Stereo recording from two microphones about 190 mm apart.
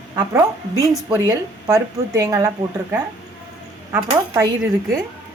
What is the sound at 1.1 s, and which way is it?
A woman's voice, 15° right (ahead or behind).